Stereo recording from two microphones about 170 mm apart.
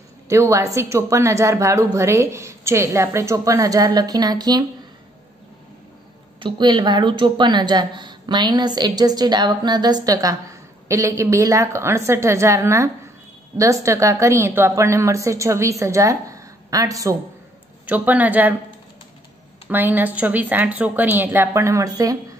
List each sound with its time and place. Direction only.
0.3 s a woman's voice: 20° right (ahead or behind)
6.4 s a woman's voice: 30° right (ahead or behind)
17.8 s a woman's voice: 10° right (ahead or behind)
19.7 s a woman's voice: 10° right (ahead or behind)